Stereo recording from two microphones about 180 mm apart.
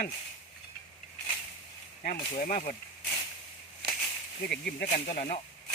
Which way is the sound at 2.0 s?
50° left (ahead or behind).